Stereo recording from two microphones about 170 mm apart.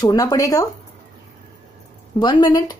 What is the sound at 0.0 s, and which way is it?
Speech, 20° left (ahead or behind).